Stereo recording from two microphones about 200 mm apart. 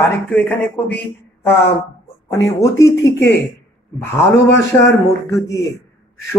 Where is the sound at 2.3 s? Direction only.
15° left (ahead or behind).